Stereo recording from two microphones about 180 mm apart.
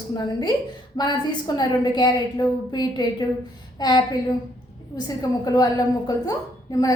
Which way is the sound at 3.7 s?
20° left (ahead or behind).